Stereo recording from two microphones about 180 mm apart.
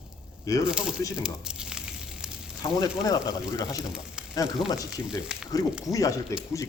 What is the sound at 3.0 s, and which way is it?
Speech, 20° left (ahead or behind).